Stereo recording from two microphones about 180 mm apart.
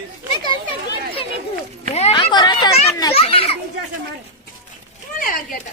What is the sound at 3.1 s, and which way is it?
Speech, 30° left (ahead or behind).